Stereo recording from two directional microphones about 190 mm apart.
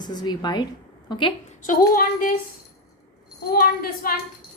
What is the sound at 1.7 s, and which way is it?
Speech, 50° left (ahead or behind).